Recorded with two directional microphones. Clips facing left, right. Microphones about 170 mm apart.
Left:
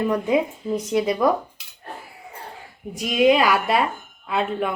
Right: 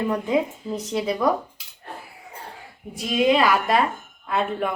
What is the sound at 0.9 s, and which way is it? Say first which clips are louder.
Speech: left 5 dB; 15° left (ahead or behind).